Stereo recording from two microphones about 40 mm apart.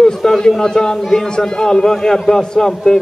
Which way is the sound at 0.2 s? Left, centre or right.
Centre.